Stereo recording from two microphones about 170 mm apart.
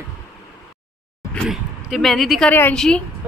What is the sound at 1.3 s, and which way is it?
A woman's voice, centre (ahead or behind).